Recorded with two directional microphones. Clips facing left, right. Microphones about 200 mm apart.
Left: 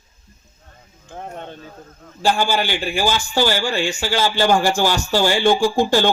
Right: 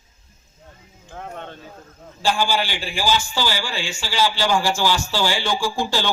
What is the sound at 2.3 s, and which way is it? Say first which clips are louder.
Music: left 2 dB; 50° left (ahead or behind).